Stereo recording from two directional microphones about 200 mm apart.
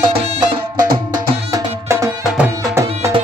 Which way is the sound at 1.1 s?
20° right (ahead or behind).